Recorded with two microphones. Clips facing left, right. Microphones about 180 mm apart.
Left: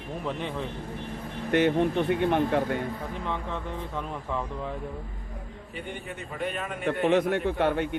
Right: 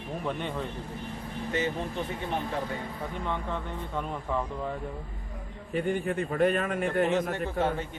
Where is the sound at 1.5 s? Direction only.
65° left (ahead or behind).